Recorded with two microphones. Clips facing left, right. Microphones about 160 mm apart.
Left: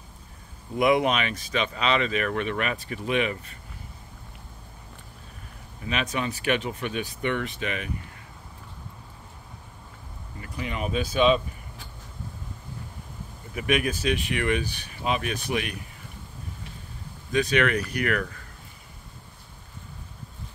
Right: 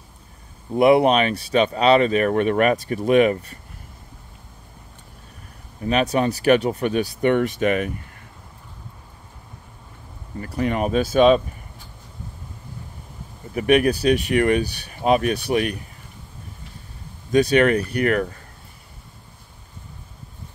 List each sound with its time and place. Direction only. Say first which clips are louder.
0.7 s speech: right 7 dB; 35° right (ahead or behind)
5.8 s speech: right 9 dB; 40° right (ahead or behind)
10.4 s speech: right 9 dB; 45° right (ahead or behind)
13.6 s speech: right 8 dB; 40° right (ahead or behind)
17.3 s speech: right 7 dB; 40° right (ahead or behind)